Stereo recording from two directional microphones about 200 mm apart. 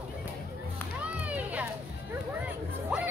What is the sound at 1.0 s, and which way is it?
Music, 5° right (ahead or behind).